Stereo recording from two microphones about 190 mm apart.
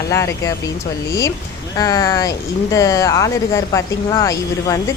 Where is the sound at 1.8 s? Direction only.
20° left (ahead or behind).